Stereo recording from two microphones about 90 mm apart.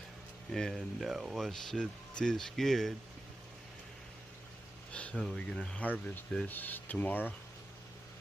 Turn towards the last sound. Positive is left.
turn(degrees=20)  # may be behind; listen again after turning